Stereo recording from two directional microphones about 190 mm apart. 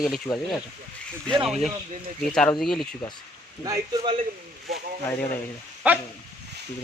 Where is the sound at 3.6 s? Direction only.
20° right (ahead or behind).